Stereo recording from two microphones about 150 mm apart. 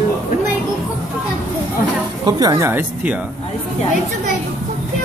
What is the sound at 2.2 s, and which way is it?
Speech, 25° right (ahead or behind).